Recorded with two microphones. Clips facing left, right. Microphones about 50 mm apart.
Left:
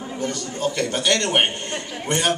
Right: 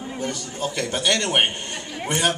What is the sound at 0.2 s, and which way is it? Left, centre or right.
A man's voice, centre.